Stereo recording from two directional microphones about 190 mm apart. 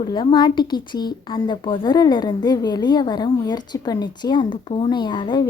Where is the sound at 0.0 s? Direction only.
25° left (ahead or behind).